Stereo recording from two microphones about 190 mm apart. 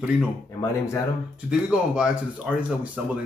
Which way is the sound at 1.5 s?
5° right (ahead or behind).